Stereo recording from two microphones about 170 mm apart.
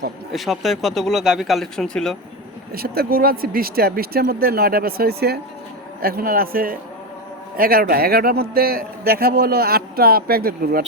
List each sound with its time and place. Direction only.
0.3 s speech: centre (ahead or behind)
2.7 s a man's voice: 65° right (ahead or behind)